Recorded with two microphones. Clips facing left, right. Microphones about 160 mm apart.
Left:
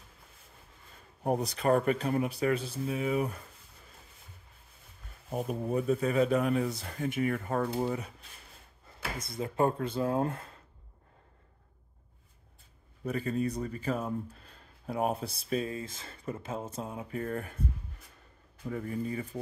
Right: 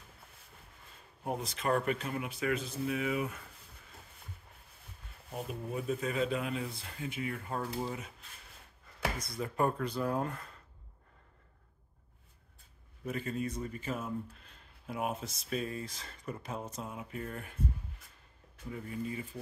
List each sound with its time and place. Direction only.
1.2 s speech: 40° left (ahead or behind)
5.3 s speech: 45° left (ahead or behind)
9.2 s speech: 25° left (ahead or behind)
13.0 s speech: 40° left (ahead or behind)
17.2 s speech: 40° left (ahead or behind)
18.7 s speech: 40° left (ahead or behind)